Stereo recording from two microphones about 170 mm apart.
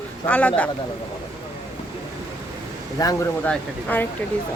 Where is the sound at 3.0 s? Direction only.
20° left (ahead or behind).